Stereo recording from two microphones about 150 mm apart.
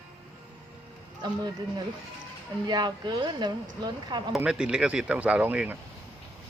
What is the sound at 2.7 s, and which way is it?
Speech, 30° right (ahead or behind).